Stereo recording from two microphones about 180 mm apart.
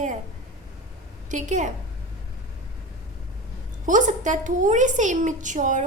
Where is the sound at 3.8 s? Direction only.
45° right (ahead or behind).